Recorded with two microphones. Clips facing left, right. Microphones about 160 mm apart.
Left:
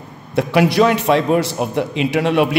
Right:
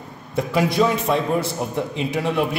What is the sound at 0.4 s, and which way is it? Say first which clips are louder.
A man's voice: left 5 dB; 75° left (ahead or behind).